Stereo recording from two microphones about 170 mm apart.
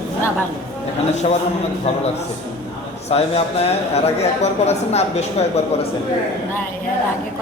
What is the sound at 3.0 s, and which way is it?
A woman's voice, 35° left (ahead or behind).